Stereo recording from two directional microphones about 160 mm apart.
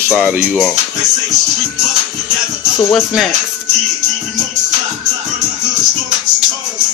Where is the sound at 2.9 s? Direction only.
Centre (ahead or behind).